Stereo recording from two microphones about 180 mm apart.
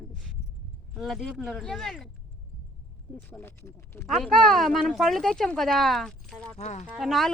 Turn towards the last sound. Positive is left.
turn(degrees=0)  # may be behind; listen again after turning